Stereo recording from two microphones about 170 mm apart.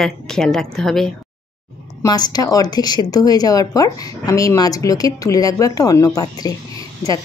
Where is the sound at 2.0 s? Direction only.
25° left (ahead or behind).